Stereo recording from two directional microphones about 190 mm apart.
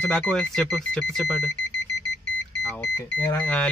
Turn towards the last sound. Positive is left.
turn(degrees=10)  # may be behind; listen again after turning